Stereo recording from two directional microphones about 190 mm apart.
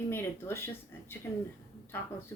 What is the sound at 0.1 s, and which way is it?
Speech, 10° left (ahead or behind).